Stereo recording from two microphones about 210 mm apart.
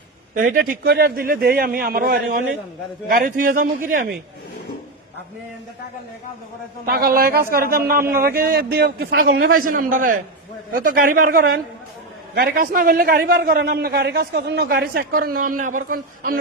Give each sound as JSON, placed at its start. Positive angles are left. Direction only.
{"t": 0.3, "sound": "a man's voice", "side_deg": -40}
{"t": 6.8, "sound": "a man's voice", "side_deg": -45}